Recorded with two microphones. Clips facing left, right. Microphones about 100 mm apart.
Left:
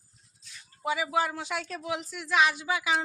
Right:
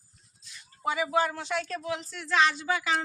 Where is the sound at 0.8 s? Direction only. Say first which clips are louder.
Right 1 dB; 5° left (ahead or behind).